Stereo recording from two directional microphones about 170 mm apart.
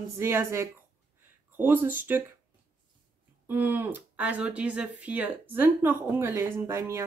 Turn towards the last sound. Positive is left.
turn(degrees=-15)  # may be behind; listen again after turning